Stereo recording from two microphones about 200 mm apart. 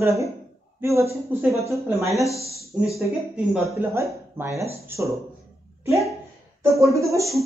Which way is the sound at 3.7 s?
15° right (ahead or behind).